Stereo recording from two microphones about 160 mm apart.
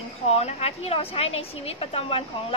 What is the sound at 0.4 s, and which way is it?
A woman's voice, 40° left (ahead or behind).